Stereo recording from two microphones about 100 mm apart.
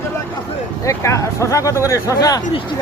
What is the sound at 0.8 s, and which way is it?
Speech, 30° left (ahead or behind).